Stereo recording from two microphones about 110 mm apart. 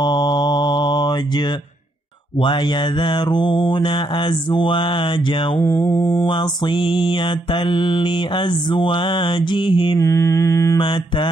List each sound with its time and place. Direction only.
0.0 s mantra: 40° left (ahead or behind)
2.4 s mantra: 45° left (ahead or behind)
5.6 s mantra: 20° left (ahead or behind)
6.2 s mantra: 50° left (ahead or behind)
9.9 s mantra: 25° left (ahead or behind)
10.8 s mantra: 45° left (ahead or behind)